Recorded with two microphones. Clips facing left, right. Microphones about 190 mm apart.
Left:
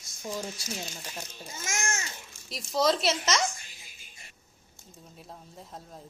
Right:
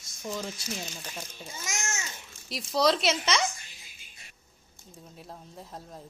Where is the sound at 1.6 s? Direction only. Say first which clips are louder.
Left 3 dB; 50° left (ahead or behind).